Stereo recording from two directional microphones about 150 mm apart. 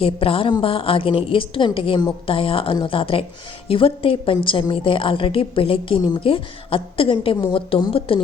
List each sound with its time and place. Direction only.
0.0 s a woman's voice: 40° left (ahead or behind)